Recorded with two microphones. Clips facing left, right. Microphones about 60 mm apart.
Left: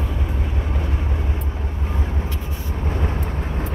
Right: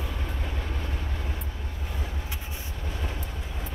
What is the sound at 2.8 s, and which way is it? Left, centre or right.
Vehicle, left.